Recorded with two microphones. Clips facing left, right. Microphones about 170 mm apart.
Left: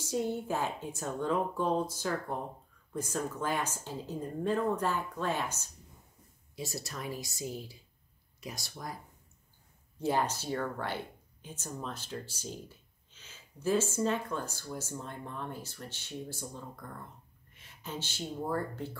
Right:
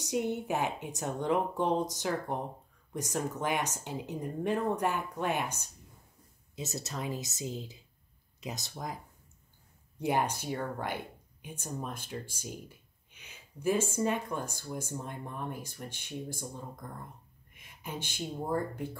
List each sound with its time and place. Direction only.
0.0 s speech: 20° right (ahead or behind)